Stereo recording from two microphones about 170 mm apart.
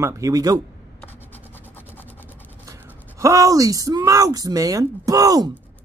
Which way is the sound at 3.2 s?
20° right (ahead or behind).